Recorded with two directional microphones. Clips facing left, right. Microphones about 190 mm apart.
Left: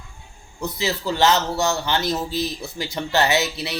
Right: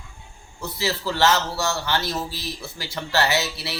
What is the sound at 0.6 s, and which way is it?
A man's voice, 20° left (ahead or behind).